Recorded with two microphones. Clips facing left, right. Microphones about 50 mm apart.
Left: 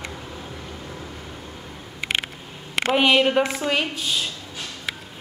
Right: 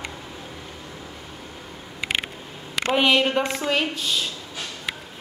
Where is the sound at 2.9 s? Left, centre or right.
Centre.